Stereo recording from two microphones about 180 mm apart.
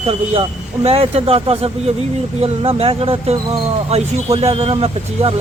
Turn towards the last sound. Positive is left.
turn(degrees=-35)  # may be behind; listen again after turning